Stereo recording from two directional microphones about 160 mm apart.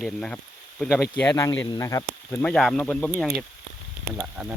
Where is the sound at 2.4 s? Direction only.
5° left (ahead or behind).